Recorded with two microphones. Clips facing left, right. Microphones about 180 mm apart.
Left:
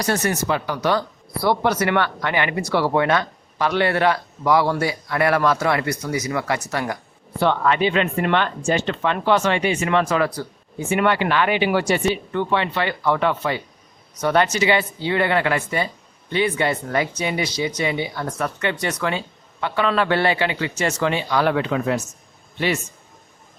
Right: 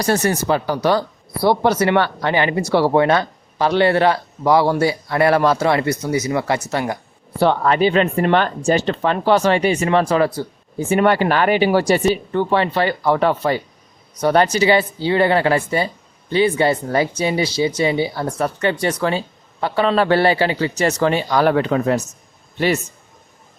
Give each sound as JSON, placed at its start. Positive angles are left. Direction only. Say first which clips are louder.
{"t": 0.0, "sound": "a man's voice", "louder": "right 4 dB", "side_deg": -30}